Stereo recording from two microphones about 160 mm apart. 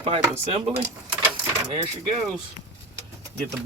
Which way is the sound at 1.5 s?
30° right (ahead or behind).